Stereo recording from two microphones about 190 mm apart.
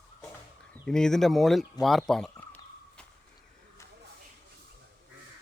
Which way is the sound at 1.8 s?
Centre (ahead or behind).